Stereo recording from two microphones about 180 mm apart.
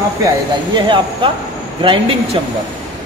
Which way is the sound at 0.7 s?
25° right (ahead or behind).